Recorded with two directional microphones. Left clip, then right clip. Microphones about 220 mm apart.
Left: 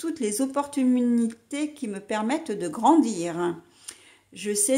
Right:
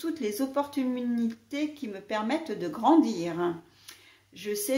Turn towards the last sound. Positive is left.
turn(degrees=45)  # may be behind; listen again after turning